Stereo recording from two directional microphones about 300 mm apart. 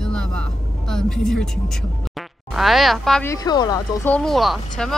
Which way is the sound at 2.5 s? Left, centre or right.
Centre.